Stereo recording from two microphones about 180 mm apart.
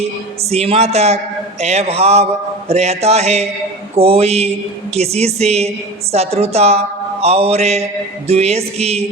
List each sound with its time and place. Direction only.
0.5 s a woman's voice: 35° right (ahead or behind)